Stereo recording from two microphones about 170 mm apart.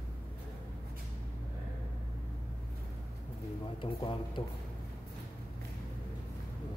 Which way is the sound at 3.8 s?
30° left (ahead or behind).